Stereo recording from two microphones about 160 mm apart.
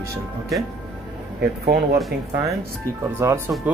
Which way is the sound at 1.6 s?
75° right (ahead or behind).